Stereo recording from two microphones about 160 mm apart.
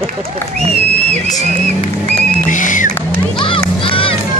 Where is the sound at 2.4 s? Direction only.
55° left (ahead or behind).